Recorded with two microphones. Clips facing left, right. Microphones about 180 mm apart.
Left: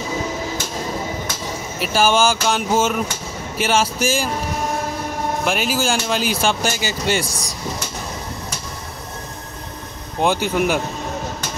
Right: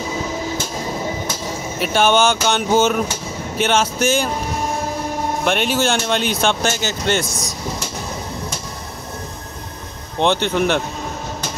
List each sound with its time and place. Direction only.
1.8 s speech: 5° left (ahead or behind)
5.4 s speech: 5° left (ahead or behind)
7.2 s speech: 35° left (ahead or behind)
10.2 s speech: 5° left (ahead or behind)